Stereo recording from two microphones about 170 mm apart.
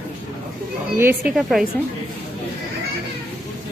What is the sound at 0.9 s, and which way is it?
Speech, 15° right (ahead or behind).